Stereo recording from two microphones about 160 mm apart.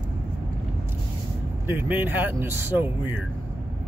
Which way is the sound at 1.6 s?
10° right (ahead or behind).